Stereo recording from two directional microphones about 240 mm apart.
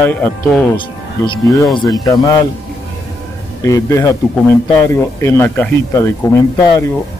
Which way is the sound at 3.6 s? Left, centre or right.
Centre.